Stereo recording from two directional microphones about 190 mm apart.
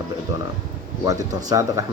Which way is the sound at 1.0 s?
20° right (ahead or behind).